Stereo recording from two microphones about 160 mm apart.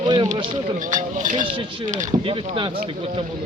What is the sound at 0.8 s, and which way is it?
Speech, 50° right (ahead or behind).